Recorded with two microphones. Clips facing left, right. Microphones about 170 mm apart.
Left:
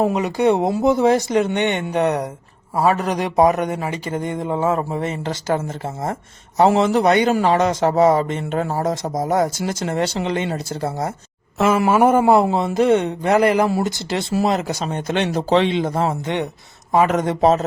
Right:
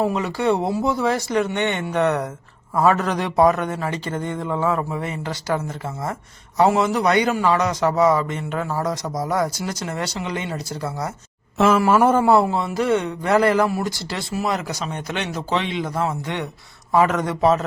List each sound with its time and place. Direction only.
0.0 s a man's voice: 15° left (ahead or behind)
4.6 s a man's voice: 35° left (ahead or behind)
11.9 s a man's voice: 10° left (ahead or behind)